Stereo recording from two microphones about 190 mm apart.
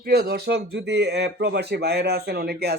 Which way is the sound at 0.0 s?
55° right (ahead or behind).